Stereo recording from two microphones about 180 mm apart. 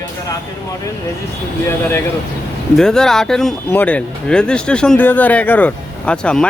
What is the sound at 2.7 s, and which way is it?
Speech, 5° left (ahead or behind).